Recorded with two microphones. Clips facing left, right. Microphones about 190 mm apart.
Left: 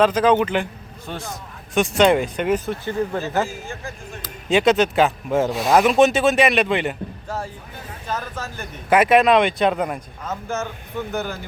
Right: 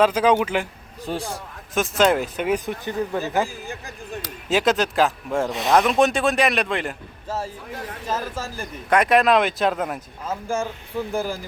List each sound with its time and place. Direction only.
0.0 s speech: 10° right (ahead or behind)
1.7 s speech: centre (ahead or behind)
2.6 s speech: 15° right (ahead or behind)
4.4 s speech: centre (ahead or behind)
8.0 s speech: 5° right (ahead or behind)
11.1 s speech: 30° right (ahead or behind)